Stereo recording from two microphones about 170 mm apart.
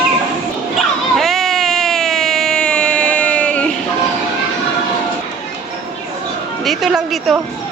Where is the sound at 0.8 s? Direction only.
Centre (ahead or behind).